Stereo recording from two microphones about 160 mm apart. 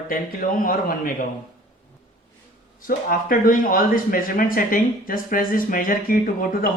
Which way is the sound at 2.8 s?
60° left (ahead or behind).